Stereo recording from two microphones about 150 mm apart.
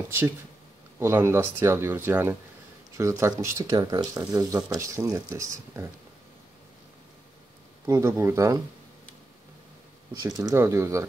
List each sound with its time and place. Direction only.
0.9 s speech: 15° right (ahead or behind)
7.8 s speech: 20° right (ahead or behind)
10.2 s speech: 25° right (ahead or behind)